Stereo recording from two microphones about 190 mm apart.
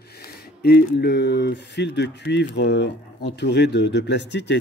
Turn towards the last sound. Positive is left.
turn(degrees=65)  # may be behind; listen again after turning